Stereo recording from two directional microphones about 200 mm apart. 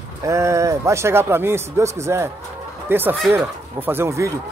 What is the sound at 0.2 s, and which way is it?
A man's voice, 15° right (ahead or behind).